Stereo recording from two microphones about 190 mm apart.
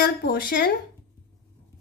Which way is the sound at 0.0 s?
55° left (ahead or behind).